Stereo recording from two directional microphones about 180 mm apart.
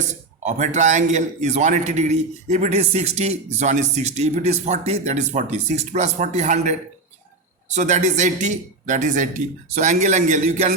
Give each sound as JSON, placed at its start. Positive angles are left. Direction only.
{"t": 0.0, "sound": "a man's voice", "side_deg": -40}